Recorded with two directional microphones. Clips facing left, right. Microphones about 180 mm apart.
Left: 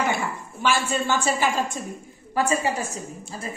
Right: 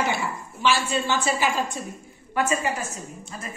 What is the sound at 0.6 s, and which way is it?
A woman's voice, 50° left (ahead or behind).